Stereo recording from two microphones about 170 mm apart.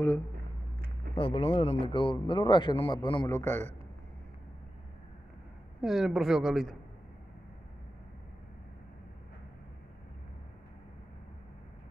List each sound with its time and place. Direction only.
1.1 s speech: 30° left (ahead or behind)
3.3 s a man's voice: 15° left (ahead or behind)
5.8 s speech: centre (ahead or behind)